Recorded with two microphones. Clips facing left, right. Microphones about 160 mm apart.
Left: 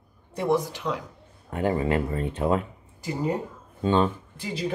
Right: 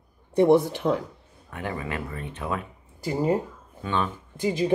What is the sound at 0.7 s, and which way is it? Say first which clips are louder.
Speech: right 6 dB; 50° right (ahead or behind).